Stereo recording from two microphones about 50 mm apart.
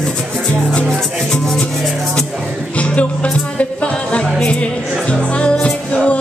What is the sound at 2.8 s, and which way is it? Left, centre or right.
Music, left.